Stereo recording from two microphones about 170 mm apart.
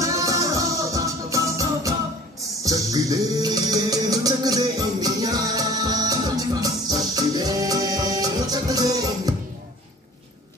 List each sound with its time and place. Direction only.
0.0 s music: 20° right (ahead or behind)